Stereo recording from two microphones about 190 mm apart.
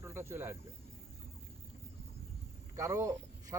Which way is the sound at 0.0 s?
15° right (ahead or behind).